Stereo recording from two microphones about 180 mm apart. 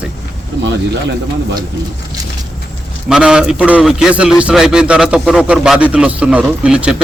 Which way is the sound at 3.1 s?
5° right (ahead or behind).